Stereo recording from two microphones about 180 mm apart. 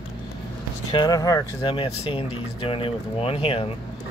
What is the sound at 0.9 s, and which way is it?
Speech, 20° left (ahead or behind).